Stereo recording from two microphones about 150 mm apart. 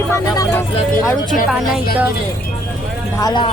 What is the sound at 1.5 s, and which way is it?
Speech, 5° right (ahead or behind).